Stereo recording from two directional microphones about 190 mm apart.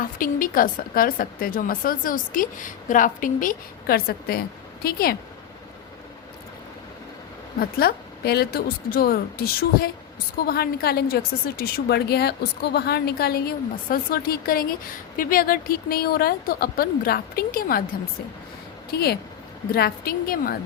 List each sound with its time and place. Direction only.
0.2 s speech: 45° left (ahead or behind)
7.6 s a woman's voice: 50° left (ahead or behind)
18.9 s speech: 55° left (ahead or behind)